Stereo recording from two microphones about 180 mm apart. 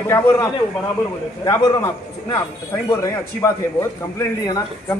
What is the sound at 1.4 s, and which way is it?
A man's voice, 20° left (ahead or behind).